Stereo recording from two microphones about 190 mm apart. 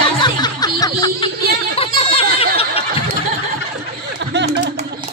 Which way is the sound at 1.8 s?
30° left (ahead or behind).